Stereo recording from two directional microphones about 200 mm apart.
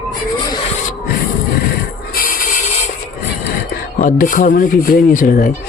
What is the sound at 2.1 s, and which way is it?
Music, 45° left (ahead or behind).